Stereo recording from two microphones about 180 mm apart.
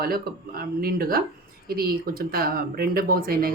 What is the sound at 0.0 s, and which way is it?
Speech, 55° right (ahead or behind).